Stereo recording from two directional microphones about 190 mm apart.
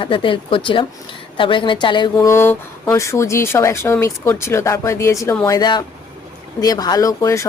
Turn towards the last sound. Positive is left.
turn(degrees=15)  # may be behind; listen again after turning